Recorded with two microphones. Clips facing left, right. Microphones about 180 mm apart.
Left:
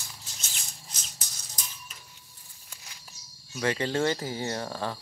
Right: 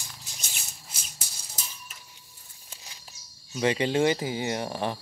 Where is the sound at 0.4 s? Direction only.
10° right (ahead or behind).